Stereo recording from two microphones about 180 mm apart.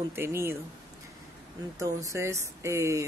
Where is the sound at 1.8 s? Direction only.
15° right (ahead or behind).